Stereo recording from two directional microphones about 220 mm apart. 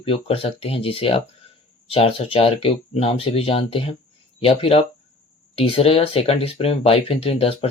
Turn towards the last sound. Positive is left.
turn(degrees=25)  # may be behind; listen again after turning